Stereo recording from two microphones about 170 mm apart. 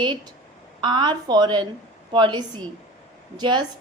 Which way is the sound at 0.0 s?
25° right (ahead or behind).